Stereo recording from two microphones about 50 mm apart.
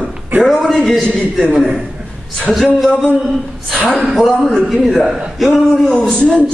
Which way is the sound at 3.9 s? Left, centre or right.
Centre.